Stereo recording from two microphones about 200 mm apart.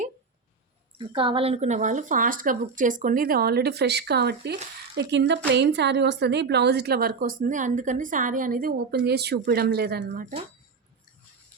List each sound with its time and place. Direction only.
0.9 s a woman's voice: 25° right (ahead or behind); by 10.1 s 50° right (ahead or behind)
10.1 s speech: 40° right (ahead or behind)